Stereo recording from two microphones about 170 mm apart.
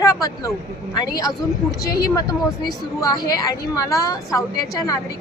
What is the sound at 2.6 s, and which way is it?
A woman's voice, 25° left (ahead or behind).